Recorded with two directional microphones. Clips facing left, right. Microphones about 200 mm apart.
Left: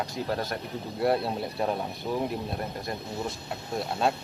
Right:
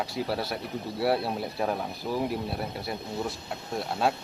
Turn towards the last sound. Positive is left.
turn(degrees=-5)  # may be behind; listen again after turning